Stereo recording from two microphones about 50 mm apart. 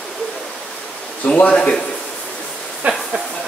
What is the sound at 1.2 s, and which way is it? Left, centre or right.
Speech, left.